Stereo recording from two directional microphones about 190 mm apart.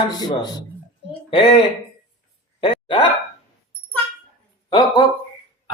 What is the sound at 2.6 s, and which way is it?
Dog, 25° left (ahead or behind).